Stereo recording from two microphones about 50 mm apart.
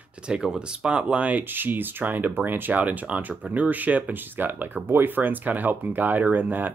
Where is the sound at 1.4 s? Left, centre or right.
Right.